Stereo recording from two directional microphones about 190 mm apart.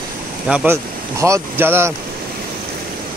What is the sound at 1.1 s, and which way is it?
Speech, 15° right (ahead or behind).